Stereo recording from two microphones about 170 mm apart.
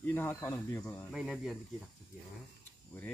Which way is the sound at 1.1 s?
5° right (ahead or behind).